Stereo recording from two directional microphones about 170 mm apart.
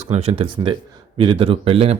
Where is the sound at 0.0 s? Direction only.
35° right (ahead or behind).